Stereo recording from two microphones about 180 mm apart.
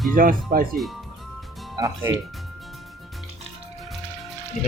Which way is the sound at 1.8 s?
20° right (ahead or behind).